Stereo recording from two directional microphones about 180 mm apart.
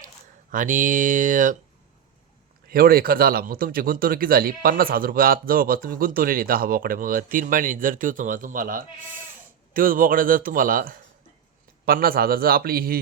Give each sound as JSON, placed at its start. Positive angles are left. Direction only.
{"t": 0.5, "sound": "speech", "side_deg": -45}
{"t": 2.6, "sound": "a man's voice", "side_deg": -55}